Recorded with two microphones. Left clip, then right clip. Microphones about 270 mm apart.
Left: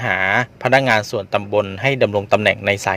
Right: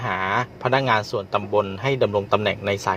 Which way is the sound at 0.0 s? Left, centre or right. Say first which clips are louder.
Left 6 dB; left.